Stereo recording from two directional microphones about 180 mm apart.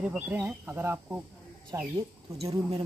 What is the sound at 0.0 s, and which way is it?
Speech, 10° right (ahead or behind).